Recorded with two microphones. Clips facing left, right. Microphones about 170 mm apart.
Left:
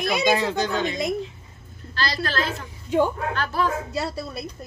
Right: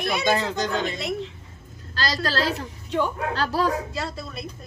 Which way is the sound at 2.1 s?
40° right (ahead or behind).